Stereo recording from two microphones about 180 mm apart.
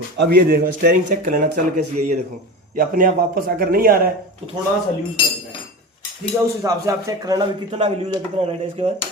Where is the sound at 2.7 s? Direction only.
50° right (ahead or behind).